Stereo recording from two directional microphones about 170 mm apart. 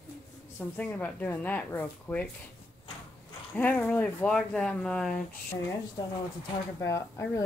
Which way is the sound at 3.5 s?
10° left (ahead or behind).